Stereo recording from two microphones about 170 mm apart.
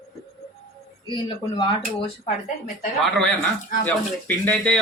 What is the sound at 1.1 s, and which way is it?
Speech, 25° left (ahead or behind).